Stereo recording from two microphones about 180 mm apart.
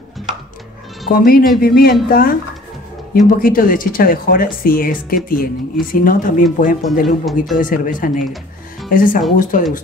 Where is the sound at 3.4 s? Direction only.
50° left (ahead or behind).